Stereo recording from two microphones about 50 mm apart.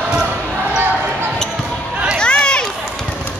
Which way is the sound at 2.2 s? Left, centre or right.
Left.